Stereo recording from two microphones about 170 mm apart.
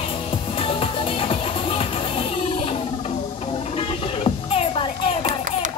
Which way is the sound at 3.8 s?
35° left (ahead or behind).